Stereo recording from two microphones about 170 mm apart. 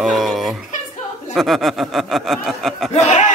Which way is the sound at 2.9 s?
40° left (ahead or behind).